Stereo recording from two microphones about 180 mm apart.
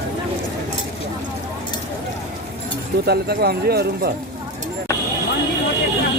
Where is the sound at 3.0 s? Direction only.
60° right (ahead or behind).